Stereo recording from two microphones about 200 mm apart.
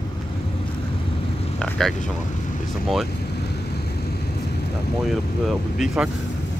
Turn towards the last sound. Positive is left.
turn(degrees=-5)  # may be behind; listen again after turning